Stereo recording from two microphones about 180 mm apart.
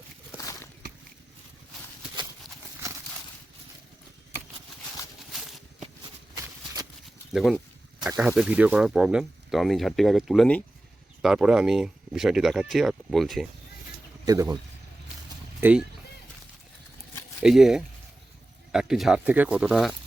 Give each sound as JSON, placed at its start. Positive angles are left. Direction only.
{"t": 0.3, "sound": "a sound", "side_deg": 20}
{"t": 7.3, "sound": "speech", "side_deg": 0}
{"t": 14.3, "sound": "speech", "side_deg": -20}
{"t": 15.6, "sound": "speech", "side_deg": -15}
{"t": 17.4, "sound": "speech", "side_deg": 0}